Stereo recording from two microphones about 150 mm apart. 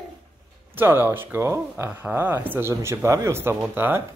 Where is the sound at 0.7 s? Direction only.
15° right (ahead or behind).